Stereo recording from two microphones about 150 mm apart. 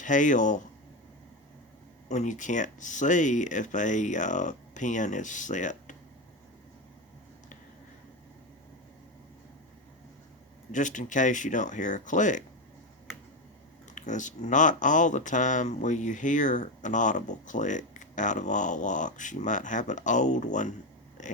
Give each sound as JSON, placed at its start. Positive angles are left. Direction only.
{"t": 0.0, "sound": "speech", "side_deg": 55}
{"t": 2.0, "sound": "speech", "side_deg": 55}
{"t": 10.7, "sound": "speech", "side_deg": 55}
{"t": 13.9, "sound": "speech", "side_deg": 55}
{"t": 21.2, "sound": "a sound", "side_deg": 55}